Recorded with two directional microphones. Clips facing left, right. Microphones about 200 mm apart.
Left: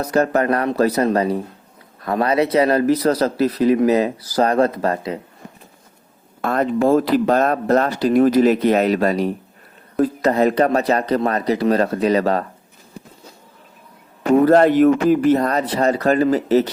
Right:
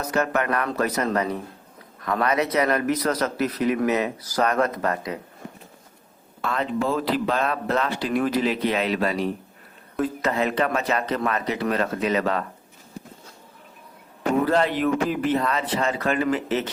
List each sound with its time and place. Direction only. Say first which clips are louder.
0.0 s speech: left 6 dB; 35° left (ahead or behind)
6.4 s speech: left 7 dB; 50° left (ahead or behind)
14.4 s speech: left 12 dB; 50° left (ahead or behind)